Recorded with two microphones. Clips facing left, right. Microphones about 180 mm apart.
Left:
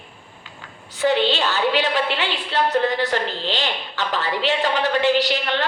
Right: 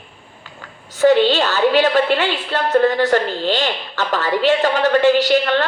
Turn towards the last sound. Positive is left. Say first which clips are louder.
# right 6 dB
turn(degrees=-50)  # may be behind; listen again after turning